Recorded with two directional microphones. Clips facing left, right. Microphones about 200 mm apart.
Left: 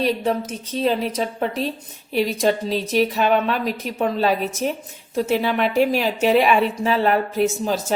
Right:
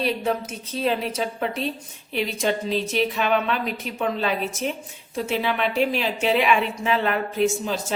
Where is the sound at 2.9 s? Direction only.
40° left (ahead or behind).